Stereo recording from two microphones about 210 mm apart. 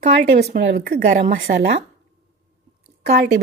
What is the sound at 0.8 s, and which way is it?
Speech, 40° right (ahead or behind).